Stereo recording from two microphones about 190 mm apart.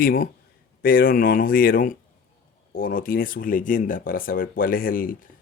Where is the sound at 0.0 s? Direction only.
50° left (ahead or behind).